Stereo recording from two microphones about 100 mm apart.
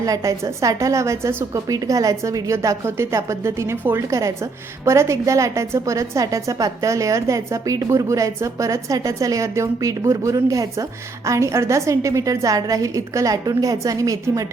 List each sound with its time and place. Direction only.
0.0 s a woman's voice: 35° right (ahead or behind)